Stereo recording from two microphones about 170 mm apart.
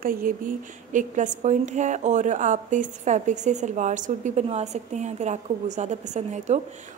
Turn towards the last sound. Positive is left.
turn(degrees=-40)  # may be behind; listen again after turning